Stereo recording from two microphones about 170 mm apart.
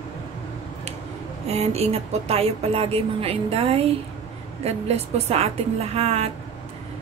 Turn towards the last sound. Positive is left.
turn(degrees=-35)  # may be behind; listen again after turning